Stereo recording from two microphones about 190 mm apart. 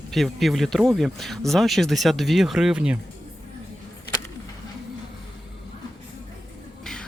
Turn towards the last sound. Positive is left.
turn(degrees=5)  # may be behind; listen again after turning